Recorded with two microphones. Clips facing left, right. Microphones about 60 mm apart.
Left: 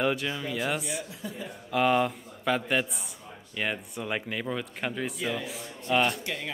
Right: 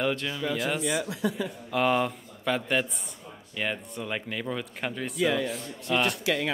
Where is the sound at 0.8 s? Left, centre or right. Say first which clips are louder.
Right 8 dB; right.